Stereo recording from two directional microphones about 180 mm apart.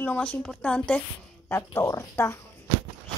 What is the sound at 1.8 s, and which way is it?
Speech, 20° left (ahead or behind).